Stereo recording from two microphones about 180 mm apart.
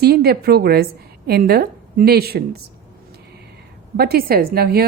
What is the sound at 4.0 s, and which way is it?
Speech, 55° right (ahead or behind).